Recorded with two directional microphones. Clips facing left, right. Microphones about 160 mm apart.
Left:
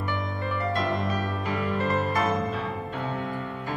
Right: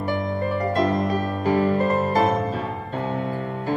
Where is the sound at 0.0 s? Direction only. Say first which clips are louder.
Right 7 dB; 40° right (ahead or behind).